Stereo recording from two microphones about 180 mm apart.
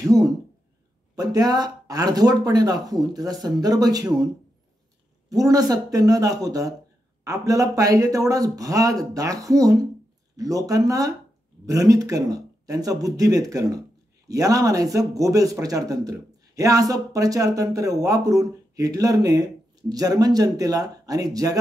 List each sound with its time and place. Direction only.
0.0 s a sound: 20° right (ahead or behind)
1.1 s a man's voice: 20° right (ahead or behind)
5.3 s a man's voice: 20° right (ahead or behind)